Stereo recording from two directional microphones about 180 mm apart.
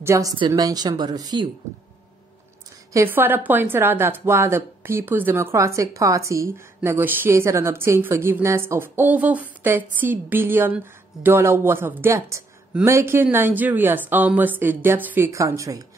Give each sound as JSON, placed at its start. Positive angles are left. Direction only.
{"t": 0.0, "sound": "a woman's voice", "side_deg": -15}
{"t": 2.9, "sound": "speech", "side_deg": -15}